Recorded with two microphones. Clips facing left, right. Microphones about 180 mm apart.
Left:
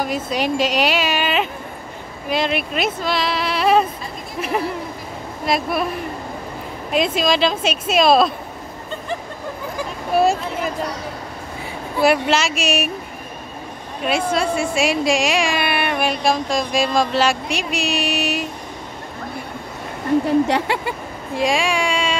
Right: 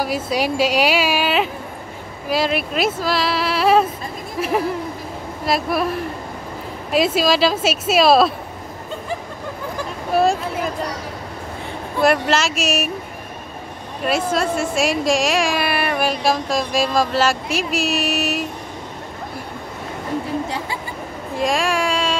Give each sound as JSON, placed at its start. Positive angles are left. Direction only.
{"t": 0.0, "sound": "speech", "side_deg": -5}
{"t": 10.1, "sound": "a sound", "side_deg": 0}
{"t": 12.0, "sound": "speech", "side_deg": 0}
{"t": 14.0, "sound": "speech", "side_deg": 0}
{"t": 20.4, "sound": "speech", "side_deg": 75}
{"t": 21.4, "sound": "speech", "side_deg": 0}